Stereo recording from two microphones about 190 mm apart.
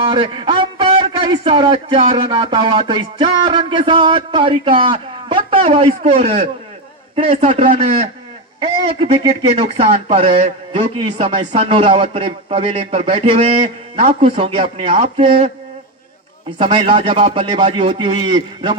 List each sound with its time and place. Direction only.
0.0 s a man's voice: 25° right (ahead or behind)
16.6 s a man's voice: 25° right (ahead or behind)